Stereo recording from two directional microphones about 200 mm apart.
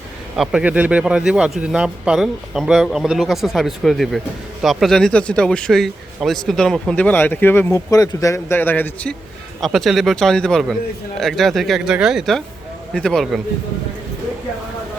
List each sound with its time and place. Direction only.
0.3 s speech: 5° right (ahead or behind)